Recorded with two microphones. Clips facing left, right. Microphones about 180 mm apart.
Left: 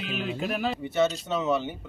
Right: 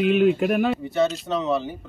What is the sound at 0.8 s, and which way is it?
Speech, centre (ahead or behind).